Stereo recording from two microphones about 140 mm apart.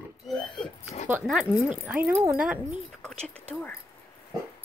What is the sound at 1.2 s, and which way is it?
Speech, centre (ahead or behind).